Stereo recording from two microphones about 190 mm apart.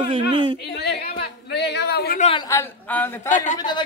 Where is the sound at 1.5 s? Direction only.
65° left (ahead or behind).